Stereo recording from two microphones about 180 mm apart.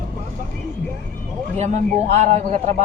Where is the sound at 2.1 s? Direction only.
40° right (ahead or behind).